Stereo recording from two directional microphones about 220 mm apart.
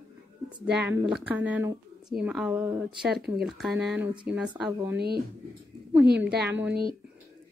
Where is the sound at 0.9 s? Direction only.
10° right (ahead or behind).